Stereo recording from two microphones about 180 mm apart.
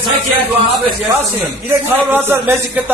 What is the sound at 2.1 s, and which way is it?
Speech, 15° right (ahead or behind).